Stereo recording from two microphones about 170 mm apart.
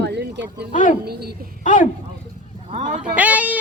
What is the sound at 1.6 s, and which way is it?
Speech, 50° left (ahead or behind).